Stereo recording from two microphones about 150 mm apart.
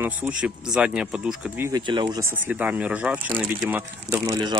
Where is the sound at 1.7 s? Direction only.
30° right (ahead or behind).